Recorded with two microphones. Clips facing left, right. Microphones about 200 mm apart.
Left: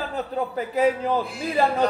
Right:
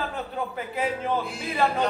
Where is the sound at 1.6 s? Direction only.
35° left (ahead or behind).